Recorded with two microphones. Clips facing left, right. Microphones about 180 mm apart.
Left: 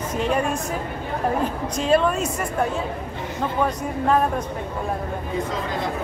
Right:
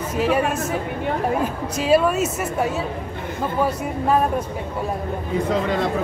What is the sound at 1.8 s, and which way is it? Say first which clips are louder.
Speech: right 2 dB; 5° right (ahead or behind).